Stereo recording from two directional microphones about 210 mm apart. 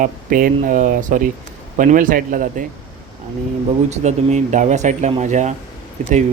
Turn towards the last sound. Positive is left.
turn(degrees=-35)  # may be behind; listen again after turning